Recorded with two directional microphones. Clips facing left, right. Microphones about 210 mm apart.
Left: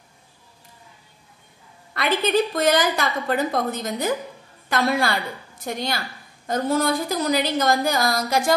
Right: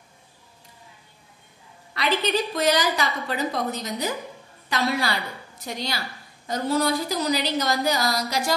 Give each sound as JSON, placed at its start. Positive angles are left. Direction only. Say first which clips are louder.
{"t": 2.0, "sound": "a woman's voice", "louder": "left 3 dB", "side_deg": 55}